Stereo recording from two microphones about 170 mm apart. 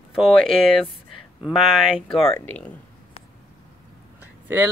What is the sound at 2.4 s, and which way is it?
Speech, 10° left (ahead or behind).